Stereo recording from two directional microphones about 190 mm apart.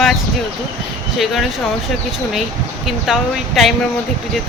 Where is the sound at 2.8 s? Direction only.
Centre (ahead or behind).